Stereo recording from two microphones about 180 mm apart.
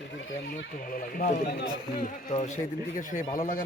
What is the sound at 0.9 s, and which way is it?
Speech, 50° left (ahead or behind).